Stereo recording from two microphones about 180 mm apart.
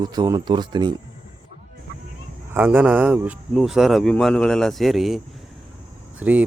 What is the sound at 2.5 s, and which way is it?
A man's voice, 10° right (ahead or behind).